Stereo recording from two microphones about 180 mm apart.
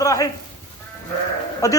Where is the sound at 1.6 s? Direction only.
20° left (ahead or behind).